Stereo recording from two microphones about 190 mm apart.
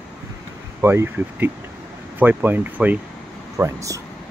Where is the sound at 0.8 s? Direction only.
10° right (ahead or behind).